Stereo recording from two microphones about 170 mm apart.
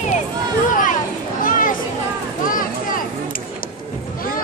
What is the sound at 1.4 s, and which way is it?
Chatter, 55° left (ahead or behind).